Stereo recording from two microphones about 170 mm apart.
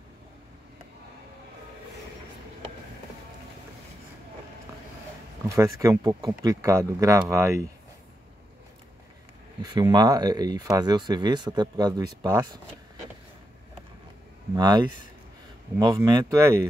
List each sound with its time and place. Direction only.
5.5 s speech: 20° right (ahead or behind)
9.6 s speech: 20° right (ahead or behind)
14.5 s speech: 25° right (ahead or behind)